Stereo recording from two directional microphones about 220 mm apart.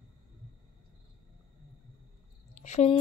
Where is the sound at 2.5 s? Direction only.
30° left (ahead or behind).